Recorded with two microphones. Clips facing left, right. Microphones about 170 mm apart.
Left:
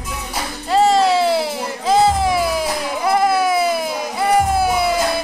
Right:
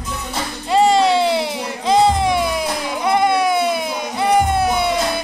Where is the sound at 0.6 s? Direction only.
Centre (ahead or behind).